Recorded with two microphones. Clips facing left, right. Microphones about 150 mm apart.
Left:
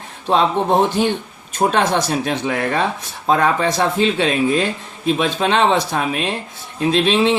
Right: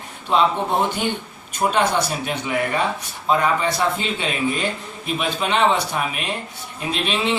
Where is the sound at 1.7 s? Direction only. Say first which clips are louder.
Left 1 dB; 90° left.